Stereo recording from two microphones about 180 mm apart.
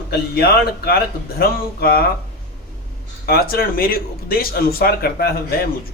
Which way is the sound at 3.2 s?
60° left (ahead or behind).